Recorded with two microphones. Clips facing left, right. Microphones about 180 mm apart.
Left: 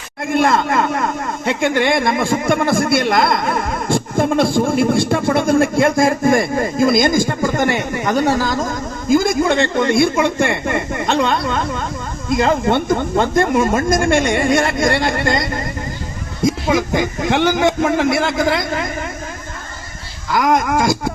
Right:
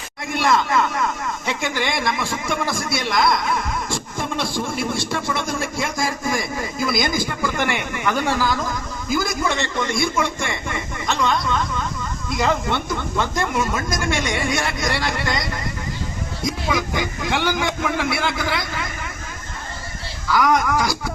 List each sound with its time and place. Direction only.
0.3 s a man's voice: 55° left (ahead or behind)
9.0 s a man's voice: 50° left (ahead or behind)
16.6 s speech: 45° left (ahead or behind)